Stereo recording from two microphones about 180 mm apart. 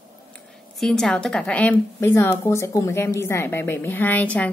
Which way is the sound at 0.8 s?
Centre (ahead or behind).